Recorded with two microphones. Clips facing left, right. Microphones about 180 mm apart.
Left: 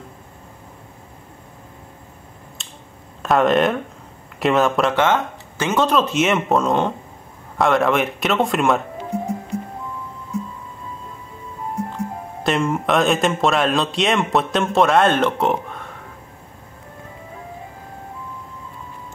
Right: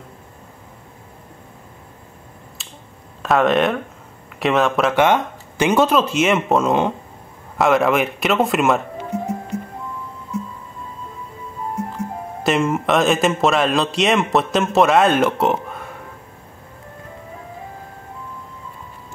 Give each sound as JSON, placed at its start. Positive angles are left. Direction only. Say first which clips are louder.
{"t": 2.6, "sound": "finger snapping", "louder": "even", "side_deg": 0}
{"t": 3.2, "sound": "speech", "louder": "even", "side_deg": 0}
{"t": 4.9, "sound": "speech", "louder": "right 2 dB", "side_deg": -15}
{"t": 12.4, "sound": "speech", "louder": "right 1 dB", "side_deg": 0}